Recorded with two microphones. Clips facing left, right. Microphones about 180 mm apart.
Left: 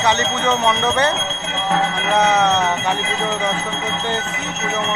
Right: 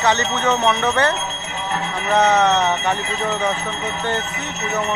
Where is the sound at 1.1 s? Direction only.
90° left.